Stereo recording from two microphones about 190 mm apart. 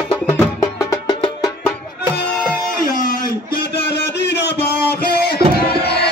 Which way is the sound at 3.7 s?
60° left (ahead or behind).